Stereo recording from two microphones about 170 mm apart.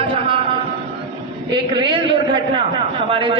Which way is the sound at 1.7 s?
25° right (ahead or behind).